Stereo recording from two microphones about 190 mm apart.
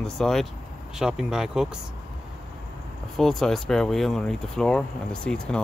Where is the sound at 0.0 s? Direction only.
Centre (ahead or behind).